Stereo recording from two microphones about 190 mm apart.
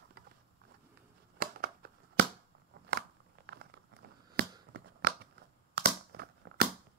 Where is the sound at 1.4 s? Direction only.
50° right (ahead or behind).